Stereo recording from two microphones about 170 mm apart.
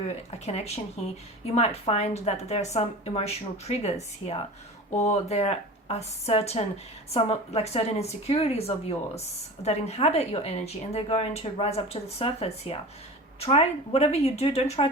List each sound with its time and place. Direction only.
0.3 s speech: 40° left (ahead or behind)